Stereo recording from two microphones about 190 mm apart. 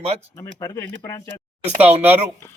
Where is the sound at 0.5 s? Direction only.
20° left (ahead or behind).